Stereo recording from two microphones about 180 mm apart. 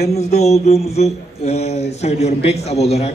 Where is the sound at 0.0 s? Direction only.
35° left (ahead or behind).